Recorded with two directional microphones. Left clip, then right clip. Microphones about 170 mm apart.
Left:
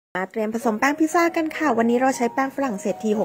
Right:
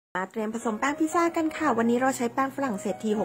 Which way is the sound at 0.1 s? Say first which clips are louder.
Left 5 dB; 25° left (ahead or behind).